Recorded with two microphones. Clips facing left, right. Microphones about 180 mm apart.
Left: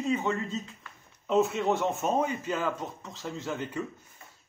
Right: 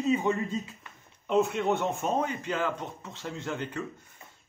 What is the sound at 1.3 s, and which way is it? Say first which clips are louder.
Speech: even; centre (ahead or behind).